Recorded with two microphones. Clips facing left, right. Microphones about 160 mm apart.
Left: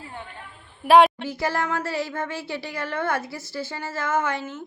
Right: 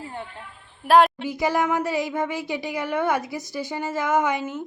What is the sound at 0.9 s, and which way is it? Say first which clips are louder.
Speech: left 1 dB; centre (ahead or behind).